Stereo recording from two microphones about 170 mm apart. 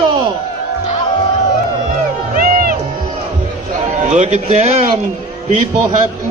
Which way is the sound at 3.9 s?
40° right (ahead or behind).